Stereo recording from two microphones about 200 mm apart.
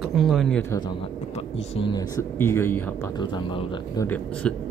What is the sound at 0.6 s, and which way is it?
Speech, 15° left (ahead or behind).